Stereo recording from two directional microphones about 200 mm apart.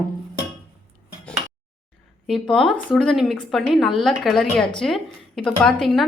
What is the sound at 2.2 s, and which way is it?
A woman's voice, centre (ahead or behind).